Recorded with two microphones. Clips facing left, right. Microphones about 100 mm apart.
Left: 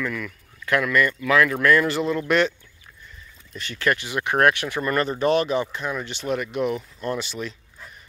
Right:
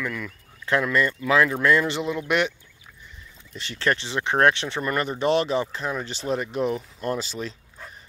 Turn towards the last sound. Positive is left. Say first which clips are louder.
# even
turn(degrees=-35)  # may be behind; listen again after turning